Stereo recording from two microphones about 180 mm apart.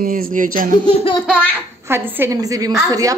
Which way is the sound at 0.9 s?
35° left (ahead or behind).